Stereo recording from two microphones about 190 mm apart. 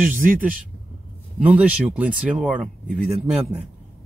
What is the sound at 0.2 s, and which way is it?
Speech, 45° right (ahead or behind).